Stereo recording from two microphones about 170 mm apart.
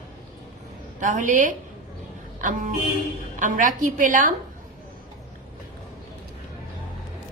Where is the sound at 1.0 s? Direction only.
50° right (ahead or behind).